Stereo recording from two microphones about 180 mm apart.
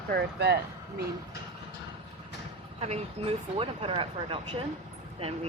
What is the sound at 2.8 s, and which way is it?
Speech, 35° right (ahead or behind).